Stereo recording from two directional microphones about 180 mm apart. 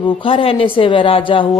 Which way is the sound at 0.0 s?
30° left (ahead or behind).